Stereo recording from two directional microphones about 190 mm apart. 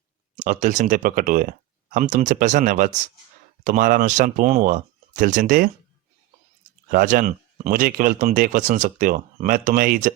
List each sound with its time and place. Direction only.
0.3 s speech: 45° right (ahead or behind)
6.9 s speech: 45° right (ahead or behind)